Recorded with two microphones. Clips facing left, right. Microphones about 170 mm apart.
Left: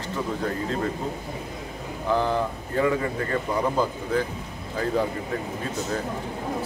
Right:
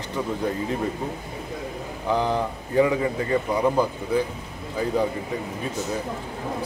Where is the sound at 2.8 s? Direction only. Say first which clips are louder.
Right 3 dB; 15° right (ahead or behind).